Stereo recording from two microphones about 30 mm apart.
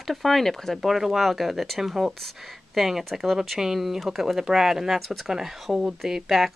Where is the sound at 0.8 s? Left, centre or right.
Centre.